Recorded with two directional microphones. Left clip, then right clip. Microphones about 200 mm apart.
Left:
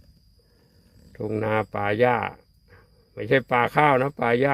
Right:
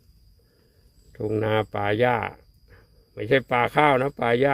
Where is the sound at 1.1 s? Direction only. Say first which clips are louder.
Right 1 dB; 10° right (ahead or behind).